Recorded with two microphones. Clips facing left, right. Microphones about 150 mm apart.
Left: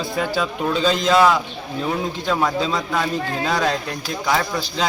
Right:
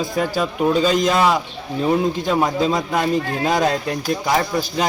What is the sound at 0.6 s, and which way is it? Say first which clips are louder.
Speech: right 5 dB; 10° right (ahead or behind).